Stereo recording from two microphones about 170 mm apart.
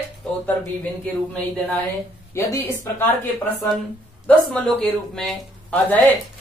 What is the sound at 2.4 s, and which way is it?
Speech, 15° left (ahead or behind).